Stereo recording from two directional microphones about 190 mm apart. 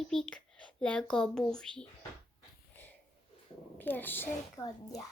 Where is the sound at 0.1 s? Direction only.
5° left (ahead or behind).